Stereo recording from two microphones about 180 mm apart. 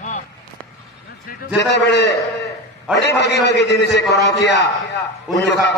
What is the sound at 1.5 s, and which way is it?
A man's voice, 70° left (ahead or behind).